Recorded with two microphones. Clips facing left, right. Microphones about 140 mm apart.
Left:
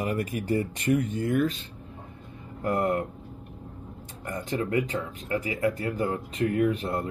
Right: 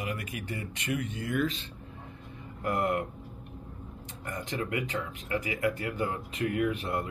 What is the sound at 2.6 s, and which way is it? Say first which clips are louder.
Speech: left 3 dB; 35° left (ahead or behind).